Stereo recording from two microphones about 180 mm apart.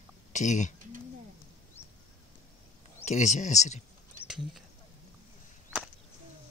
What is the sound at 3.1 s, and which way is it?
Speech, 40° left (ahead or behind).